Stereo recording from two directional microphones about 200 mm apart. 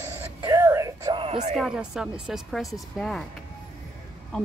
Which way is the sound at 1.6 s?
5° right (ahead or behind).